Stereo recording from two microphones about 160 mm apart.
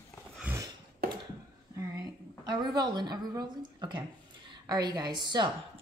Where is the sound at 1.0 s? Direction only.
75° right (ahead or behind).